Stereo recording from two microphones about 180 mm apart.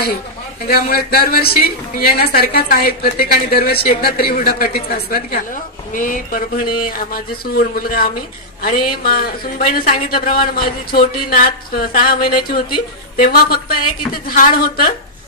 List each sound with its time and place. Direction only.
0.7 s a woman's voice: 55° left (ahead or behind)